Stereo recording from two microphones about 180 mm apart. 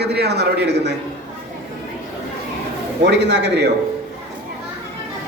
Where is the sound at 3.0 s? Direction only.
70° right (ahead or behind).